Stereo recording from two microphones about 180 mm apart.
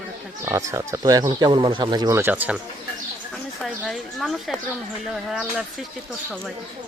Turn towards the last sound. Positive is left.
turn(degrees=0)  # may be behind; listen again after turning